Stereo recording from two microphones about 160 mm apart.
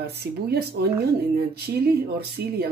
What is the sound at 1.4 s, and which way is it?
Speech, 80° right.